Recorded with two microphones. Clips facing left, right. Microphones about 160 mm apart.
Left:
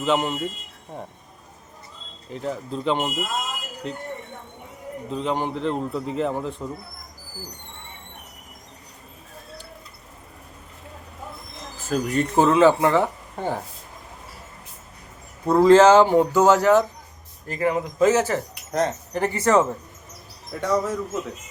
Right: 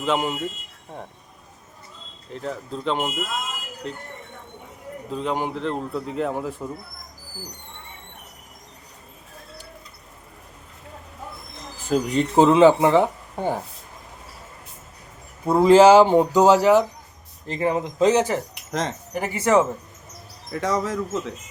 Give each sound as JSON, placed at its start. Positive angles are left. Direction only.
{"t": 0.0, "sound": "a man's voice", "side_deg": -5}
{"t": 2.3, "sound": "a man's voice", "side_deg": 5}
{"t": 5.1, "sound": "a man's voice", "side_deg": -5}
{"t": 11.9, "sound": "speech", "side_deg": -20}
{"t": 15.4, "sound": "speech", "side_deg": -10}
{"t": 18.7, "sound": "speech", "side_deg": -90}
{"t": 19.1, "sound": "speech", "side_deg": -10}
{"t": 20.5, "sound": "speech", "side_deg": -90}